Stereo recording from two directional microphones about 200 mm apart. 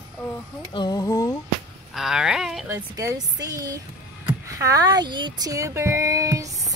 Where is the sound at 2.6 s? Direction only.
15° right (ahead or behind).